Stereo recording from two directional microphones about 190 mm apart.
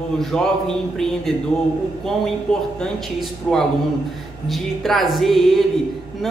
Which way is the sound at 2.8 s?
5° left (ahead or behind).